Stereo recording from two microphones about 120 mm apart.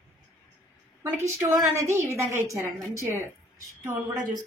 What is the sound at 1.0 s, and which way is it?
A woman's voice, 20° right (ahead or behind).